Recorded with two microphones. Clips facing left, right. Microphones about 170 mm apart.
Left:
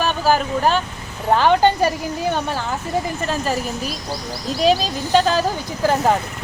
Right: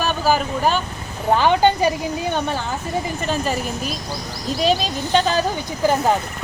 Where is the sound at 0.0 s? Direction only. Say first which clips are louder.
Left 1 dB; centre (ahead or behind).